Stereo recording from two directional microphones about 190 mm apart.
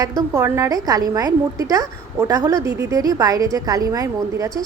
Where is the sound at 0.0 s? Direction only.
15° right (ahead or behind).